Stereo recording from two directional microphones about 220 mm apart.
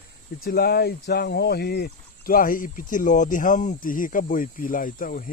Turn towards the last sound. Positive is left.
turn(degrees=40)  # may be behind; listen again after turning